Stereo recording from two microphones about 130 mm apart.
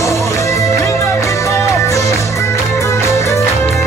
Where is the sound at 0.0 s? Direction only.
25° left (ahead or behind).